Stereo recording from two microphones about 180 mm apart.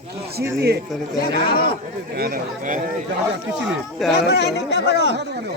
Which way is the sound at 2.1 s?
55° right (ahead or behind).